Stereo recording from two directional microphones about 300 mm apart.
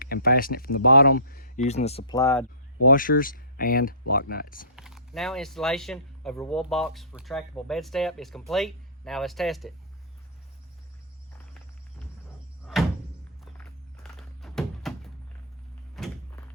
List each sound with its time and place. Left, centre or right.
0.0 s speech: left; by 2.5 s centre
2.8 s speech: left
4.8 s speech: centre
13.4 s a sound: centre